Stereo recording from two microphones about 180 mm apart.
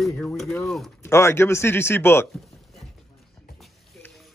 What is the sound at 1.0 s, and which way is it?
Speech, 15° left (ahead or behind).